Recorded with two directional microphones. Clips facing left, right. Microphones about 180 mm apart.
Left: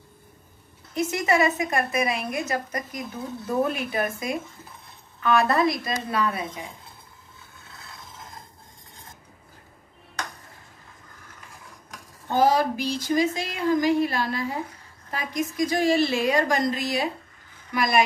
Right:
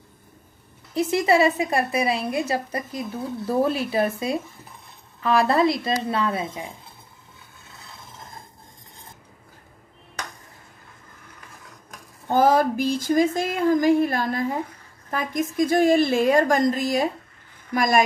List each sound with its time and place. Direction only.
0.9 s a woman's voice: 30° right (ahead or behind)
5.2 s a woman's voice: 30° right (ahead or behind)
12.3 s speech: 50° right (ahead or behind)